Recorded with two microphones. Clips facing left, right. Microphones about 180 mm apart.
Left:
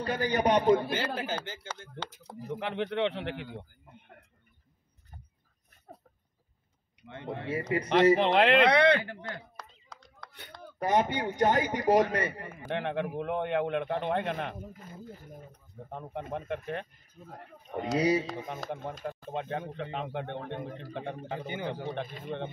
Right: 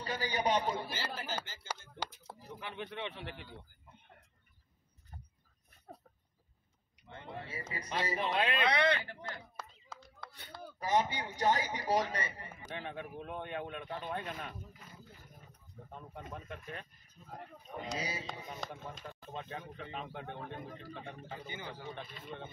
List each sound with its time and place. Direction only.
0.0 s a man's voice: 55° left (ahead or behind)
5.9 s a sound: centre (ahead or behind)
7.1 s a man's voice: 60° left (ahead or behind)
9.6 s a sound: 5° right (ahead or behind)
10.8 s a man's voice: 60° left (ahead or behind)
18.6 s speech: centre (ahead or behind)
19.0 s a man's voice: 55° left (ahead or behind)
22.0 s speech: 50° left (ahead or behind)